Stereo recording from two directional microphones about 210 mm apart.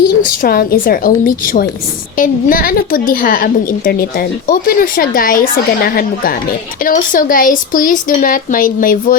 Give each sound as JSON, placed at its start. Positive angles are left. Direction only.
{"t": 0.3, "sound": "a woman's voice", "side_deg": 45}